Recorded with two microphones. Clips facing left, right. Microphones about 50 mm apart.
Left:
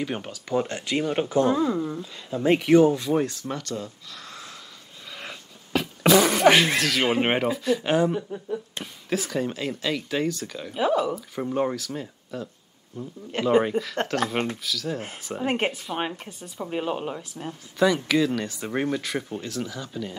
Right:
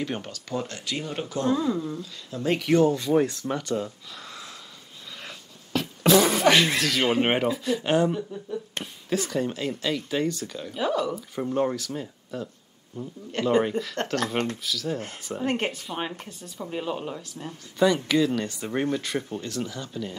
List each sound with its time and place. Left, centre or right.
0.0 s speech: centre
3.0 s speech: centre
4.3 s sniff: centre
5.1 s a sound: centre
6.4 s speech: centre
6.7 s speech: centre
8.1 s speech: left
8.8 s a sound: right
9.1 s speech: centre
10.7 s speech: centre
14.6 s speech: centre
15.2 s speech: centre
17.7 s speech: centre